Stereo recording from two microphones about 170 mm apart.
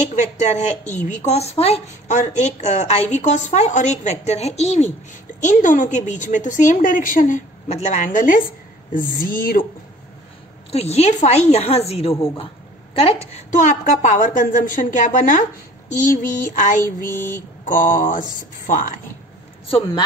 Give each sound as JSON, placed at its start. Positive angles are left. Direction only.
{"t": 0.1, "sound": "a woman's voice", "side_deg": 45}
{"t": 10.7, "sound": "a woman's voice", "side_deg": 35}